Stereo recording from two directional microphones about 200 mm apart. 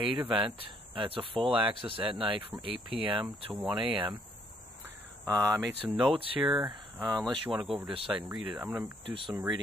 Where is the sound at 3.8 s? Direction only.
25° right (ahead or behind).